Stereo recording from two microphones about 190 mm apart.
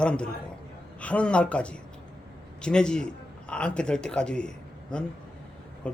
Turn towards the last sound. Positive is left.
turn(degrees=5)  # may be behind; listen again after turning